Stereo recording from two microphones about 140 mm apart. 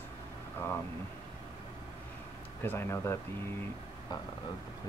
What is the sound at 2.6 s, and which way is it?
Speech, 20° left (ahead or behind).